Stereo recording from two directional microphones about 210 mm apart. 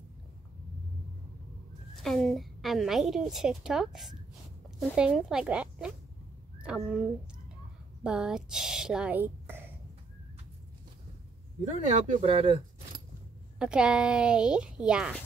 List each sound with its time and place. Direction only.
2.0 s a woman's voice: centre (ahead or behind)
11.6 s speech: 30° right (ahead or behind)
13.6 s a woman's voice: 5° right (ahead or behind)